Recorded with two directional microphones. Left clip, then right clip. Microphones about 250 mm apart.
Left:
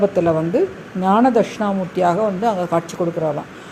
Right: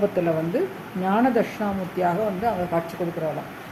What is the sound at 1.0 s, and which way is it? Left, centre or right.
Speech, left.